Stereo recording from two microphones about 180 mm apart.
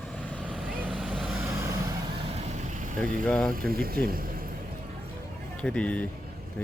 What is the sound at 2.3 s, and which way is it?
Vehicle, 40° right (ahead or behind).